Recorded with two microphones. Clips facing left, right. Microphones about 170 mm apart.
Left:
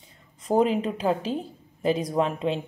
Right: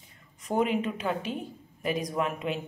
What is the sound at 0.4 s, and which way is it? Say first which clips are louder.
A woman's voice: left 5 dB; 30° left (ahead or behind).